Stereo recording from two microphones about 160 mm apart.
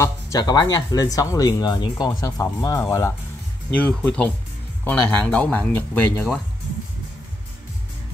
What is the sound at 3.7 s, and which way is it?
Speech, 10° left (ahead or behind).